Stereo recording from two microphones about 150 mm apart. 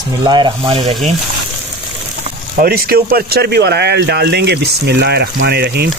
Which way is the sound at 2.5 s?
90° right.